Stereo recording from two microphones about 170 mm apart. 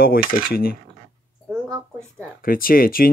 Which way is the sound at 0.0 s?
60° left (ahead or behind).